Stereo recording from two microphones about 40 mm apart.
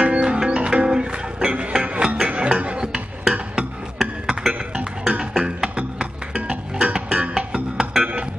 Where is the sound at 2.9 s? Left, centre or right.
Right.